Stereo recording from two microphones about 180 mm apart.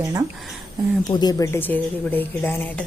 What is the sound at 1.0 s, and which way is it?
A woman's voice, 20° left (ahead or behind).